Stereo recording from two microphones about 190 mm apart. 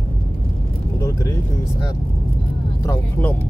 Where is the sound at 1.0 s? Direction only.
15° left (ahead or behind).